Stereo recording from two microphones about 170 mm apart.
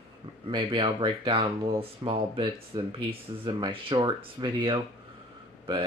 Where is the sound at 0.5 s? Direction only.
30° right (ahead or behind).